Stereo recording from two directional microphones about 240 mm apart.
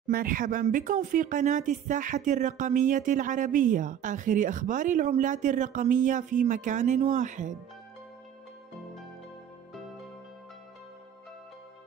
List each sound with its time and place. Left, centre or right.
0.0 s speech: right